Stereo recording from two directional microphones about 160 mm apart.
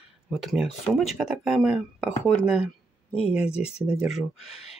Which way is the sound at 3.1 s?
40° left (ahead or behind).